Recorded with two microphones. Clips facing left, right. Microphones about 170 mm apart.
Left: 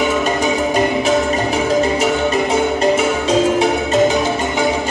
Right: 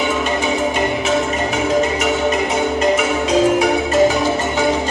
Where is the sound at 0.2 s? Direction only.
40° left (ahead or behind).